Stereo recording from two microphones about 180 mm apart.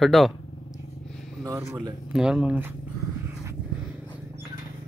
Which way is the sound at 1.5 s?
15° right (ahead or behind).